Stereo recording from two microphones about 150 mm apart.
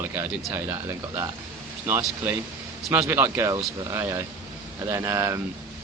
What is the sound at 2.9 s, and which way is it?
Speech, 10° right (ahead or behind).